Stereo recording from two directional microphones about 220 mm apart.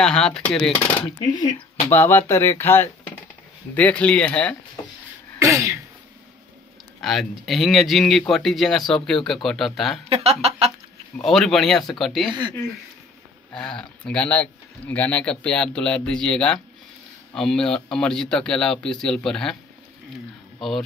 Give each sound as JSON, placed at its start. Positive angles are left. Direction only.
{"t": 0.0, "sound": "speech", "side_deg": 5}
{"t": 1.0, "sound": "speech", "side_deg": 20}
{"t": 5.4, "sound": "sneeze", "side_deg": -15}
{"t": 7.0, "sound": "speech", "side_deg": 0}
{"t": 10.0, "sound": "speech", "side_deg": -25}
{"t": 11.1, "sound": "speech", "side_deg": 0}
{"t": 13.5, "sound": "speech", "side_deg": 5}